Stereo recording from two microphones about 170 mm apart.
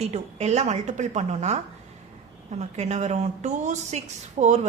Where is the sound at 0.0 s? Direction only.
40° right (ahead or behind).